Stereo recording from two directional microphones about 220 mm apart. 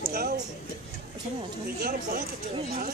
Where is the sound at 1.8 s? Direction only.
40° right (ahead or behind).